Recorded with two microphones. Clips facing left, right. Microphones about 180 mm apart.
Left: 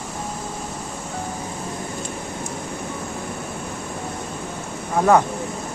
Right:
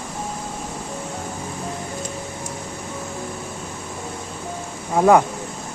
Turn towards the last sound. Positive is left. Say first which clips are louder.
# right 2 dB
turn(degrees=-15)  # may be behind; listen again after turning